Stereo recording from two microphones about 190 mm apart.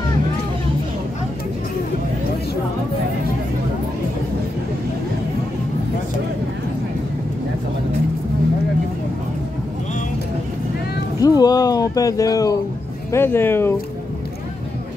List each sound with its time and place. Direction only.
11.2 s music: 20° left (ahead or behind)
13.1 s speech: 10° left (ahead or behind)